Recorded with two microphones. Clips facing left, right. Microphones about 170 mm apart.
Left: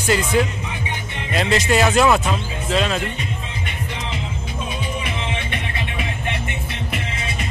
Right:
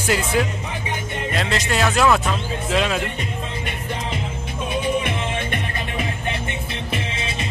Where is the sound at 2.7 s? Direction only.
10° right (ahead or behind).